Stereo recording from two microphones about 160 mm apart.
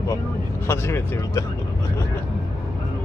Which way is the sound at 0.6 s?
15° left (ahead or behind).